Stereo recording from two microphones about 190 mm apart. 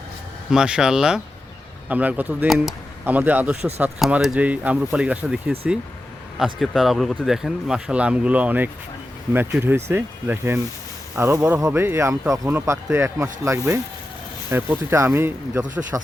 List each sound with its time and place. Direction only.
0.5 s speech: 5° right (ahead or behind)